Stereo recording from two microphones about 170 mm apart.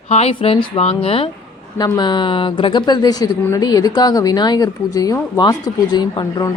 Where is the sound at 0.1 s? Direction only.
35° left (ahead or behind).